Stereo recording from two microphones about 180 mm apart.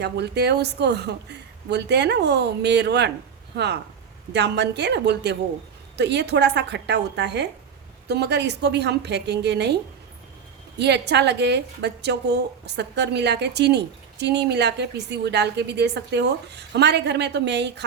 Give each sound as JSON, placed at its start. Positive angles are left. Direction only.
{"t": 0.0, "sound": "a woman's voice", "side_deg": -70}
{"t": 10.8, "sound": "a woman's voice", "side_deg": -70}